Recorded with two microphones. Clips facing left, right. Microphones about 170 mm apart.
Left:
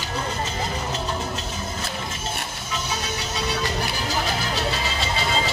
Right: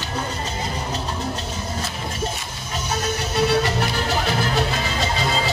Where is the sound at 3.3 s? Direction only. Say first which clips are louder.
Right 8 dB; 65° right (ahead or behind).